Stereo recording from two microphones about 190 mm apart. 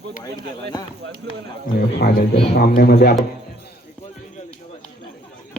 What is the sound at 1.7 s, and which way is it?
A man's voice, 55° left (ahead or behind).